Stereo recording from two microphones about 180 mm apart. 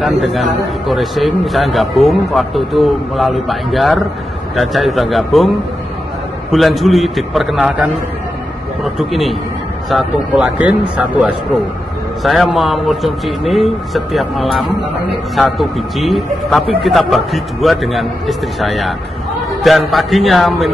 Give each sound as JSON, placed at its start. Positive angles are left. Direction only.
{"t": 0.0, "sound": "a man's voice", "side_deg": 0}
{"t": 6.5, "sound": "a man's voice", "side_deg": 0}